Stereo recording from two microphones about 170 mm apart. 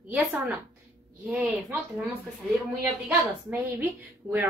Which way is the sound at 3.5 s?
10° right (ahead or behind).